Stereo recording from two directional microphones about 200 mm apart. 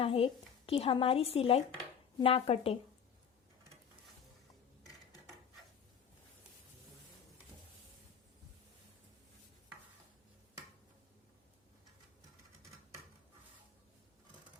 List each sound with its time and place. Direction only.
0.0 s speech: 25° left (ahead or behind)